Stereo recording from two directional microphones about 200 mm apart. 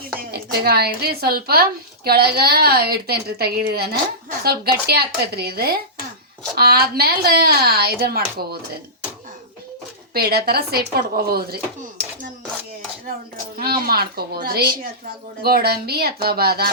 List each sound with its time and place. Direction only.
0.2 s speech: 50° right (ahead or behind)
10.2 s speech: 50° right (ahead or behind)
13.6 s speech: 50° right (ahead or behind)